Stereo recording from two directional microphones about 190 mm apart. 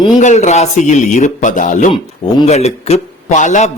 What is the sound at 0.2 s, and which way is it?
A man's voice, 40° left (ahead or behind).